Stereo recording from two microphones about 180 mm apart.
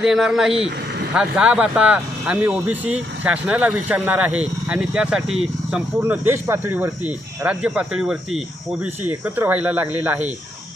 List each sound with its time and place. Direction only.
0.0 s speech: 5° right (ahead or behind)